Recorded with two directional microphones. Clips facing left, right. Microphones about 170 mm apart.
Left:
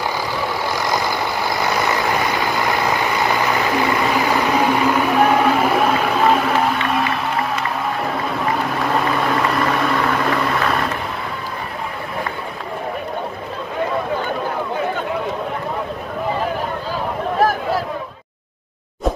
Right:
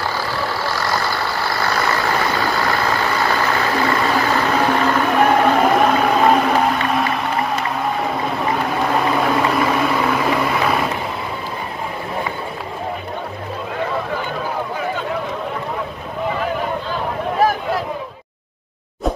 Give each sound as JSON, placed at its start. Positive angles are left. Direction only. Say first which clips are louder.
{"t": 0.0, "sound": "vehicle", "louder": "even", "side_deg": 15}
{"t": 8.9, "sound": "vehicle", "louder": "right 1 dB", "side_deg": 0}
{"t": 17.4, "sound": "a sound", "louder": "even", "side_deg": 0}